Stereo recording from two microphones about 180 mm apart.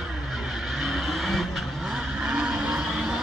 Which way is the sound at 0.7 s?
Centre (ahead or behind).